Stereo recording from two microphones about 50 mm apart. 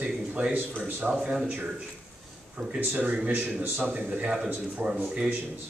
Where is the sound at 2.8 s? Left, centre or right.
Right.